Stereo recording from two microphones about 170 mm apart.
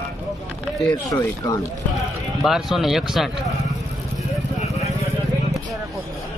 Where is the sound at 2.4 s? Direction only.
Centre (ahead or behind).